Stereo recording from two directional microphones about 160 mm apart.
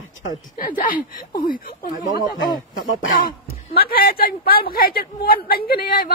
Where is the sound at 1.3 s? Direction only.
60° left (ahead or behind).